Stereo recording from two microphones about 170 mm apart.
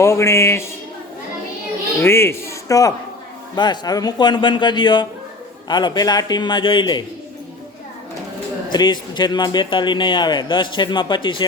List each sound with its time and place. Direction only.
0.0 s speech: 15° left (ahead or behind)
2.0 s a man's voice: 15° left (ahead or behind)
8.7 s a man's voice: 25° left (ahead or behind)